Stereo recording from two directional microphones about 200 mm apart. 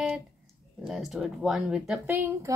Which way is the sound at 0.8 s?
Centre (ahead or behind).